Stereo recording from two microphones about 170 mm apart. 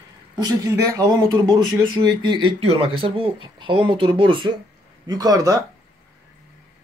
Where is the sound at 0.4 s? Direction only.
20° right (ahead or behind).